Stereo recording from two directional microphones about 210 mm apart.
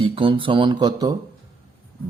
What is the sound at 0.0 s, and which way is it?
Speech, 25° right (ahead or behind).